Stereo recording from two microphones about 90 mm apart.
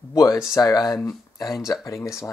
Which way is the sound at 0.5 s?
40° left (ahead or behind).